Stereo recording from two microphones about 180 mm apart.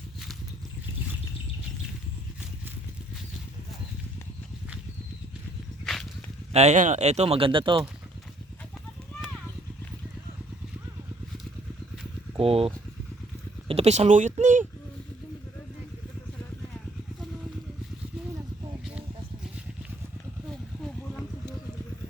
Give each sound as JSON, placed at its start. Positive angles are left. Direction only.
{"t": 5.8, "sound": "a sound", "side_deg": 0}
{"t": 6.5, "sound": "speech", "side_deg": -35}
{"t": 12.4, "sound": "speech", "side_deg": -30}